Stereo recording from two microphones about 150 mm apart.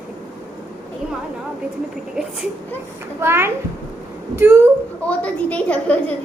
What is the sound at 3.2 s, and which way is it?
A child's voice, 15° right (ahead or behind).